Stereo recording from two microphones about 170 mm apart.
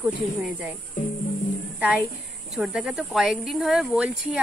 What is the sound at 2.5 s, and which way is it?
Speech, centre (ahead or behind).